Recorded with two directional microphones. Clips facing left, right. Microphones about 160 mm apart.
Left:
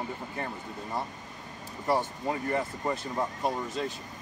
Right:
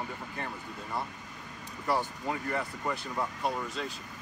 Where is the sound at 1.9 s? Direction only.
25° left (ahead or behind).